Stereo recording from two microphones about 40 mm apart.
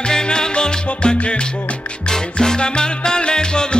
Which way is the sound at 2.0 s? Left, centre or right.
Centre.